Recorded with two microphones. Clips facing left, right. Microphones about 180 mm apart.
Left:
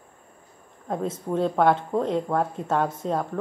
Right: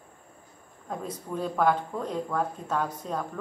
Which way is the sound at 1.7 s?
25° left (ahead or behind).